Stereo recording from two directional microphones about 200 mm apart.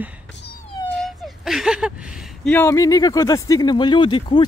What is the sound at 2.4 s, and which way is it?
Speech, 10° left (ahead or behind).